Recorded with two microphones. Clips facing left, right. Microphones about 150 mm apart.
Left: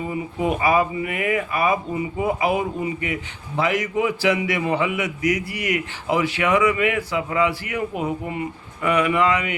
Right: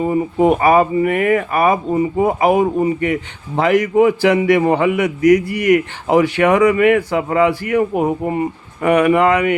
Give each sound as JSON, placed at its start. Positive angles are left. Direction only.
{"t": 0.0, "sound": "speech", "side_deg": -45}